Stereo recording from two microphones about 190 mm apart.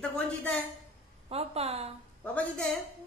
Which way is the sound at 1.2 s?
35° right (ahead or behind).